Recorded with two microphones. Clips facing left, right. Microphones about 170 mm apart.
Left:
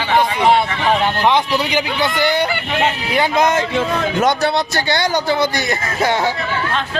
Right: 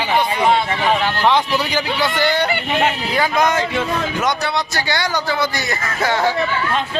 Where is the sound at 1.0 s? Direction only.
15° left (ahead or behind).